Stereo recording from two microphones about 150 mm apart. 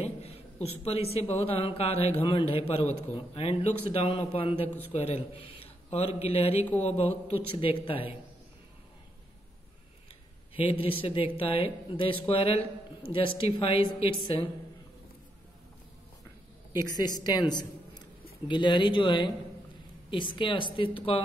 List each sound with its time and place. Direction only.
0.0 s a sound: 45° left (ahead or behind)
1.3 s a man's voice: 40° left (ahead or behind)
7.5 s a man's voice: 35° left (ahead or behind)
10.5 s a man's voice: 35° left (ahead or behind)
16.9 s a woman's voice: 25° left (ahead or behind)